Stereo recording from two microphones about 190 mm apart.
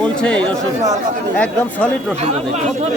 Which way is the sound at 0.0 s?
5° left (ahead or behind).